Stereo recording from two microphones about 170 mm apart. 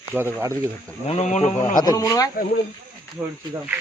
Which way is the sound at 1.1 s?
40° left (ahead or behind).